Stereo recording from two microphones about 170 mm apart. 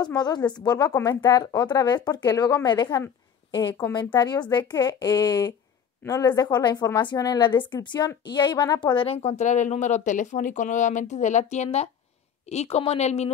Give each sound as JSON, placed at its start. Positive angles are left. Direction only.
{"t": 0.0, "sound": "a woman's voice", "side_deg": 25}